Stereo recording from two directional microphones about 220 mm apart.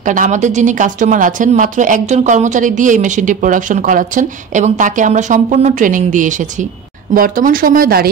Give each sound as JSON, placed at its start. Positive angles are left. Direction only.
{"t": 0.0, "sound": "speech", "side_deg": -35}